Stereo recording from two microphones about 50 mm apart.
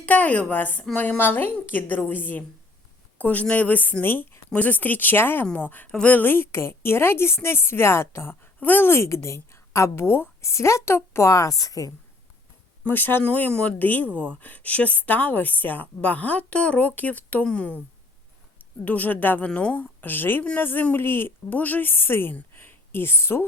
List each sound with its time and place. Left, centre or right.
0.0 s a woman's voice: left
4.4 s a woman's voice: left
6.3 s a woman's voice: left
8.6 s a woman's voice: left
9.0 s a woman's voice: left
10.5 s a woman's voice: left
12.9 s a woman's voice: left
13.5 s a woman's voice: left
13.7 s a woman's voice: left
18.9 s a woman's voice: left
19.5 s a woman's voice: left
19.7 s a woman's voice: left
22.5 s a sound: left